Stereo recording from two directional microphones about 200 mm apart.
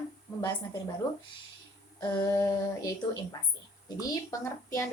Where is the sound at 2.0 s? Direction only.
20° left (ahead or behind).